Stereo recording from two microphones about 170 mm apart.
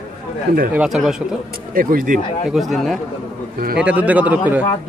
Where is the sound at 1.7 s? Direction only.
55° right (ahead or behind).